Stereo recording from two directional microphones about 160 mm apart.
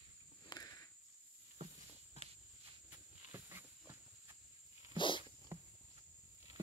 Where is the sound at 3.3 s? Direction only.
15° right (ahead or behind).